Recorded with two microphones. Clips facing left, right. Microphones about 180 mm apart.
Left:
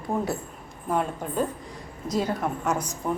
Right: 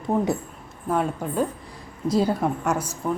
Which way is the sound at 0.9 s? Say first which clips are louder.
Right 2 dB; 5° right (ahead or behind).